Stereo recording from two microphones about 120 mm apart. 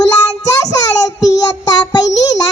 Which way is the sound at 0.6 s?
30° left (ahead or behind).